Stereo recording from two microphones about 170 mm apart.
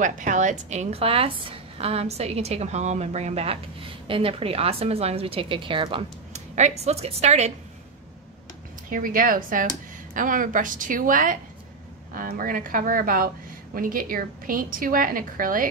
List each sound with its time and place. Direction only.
0.0 s a woman's voice: 50° right (ahead or behind)
8.9 s a woman's voice: 55° right (ahead or behind)